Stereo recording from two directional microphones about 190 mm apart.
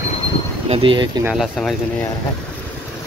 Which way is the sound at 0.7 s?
25° right (ahead or behind).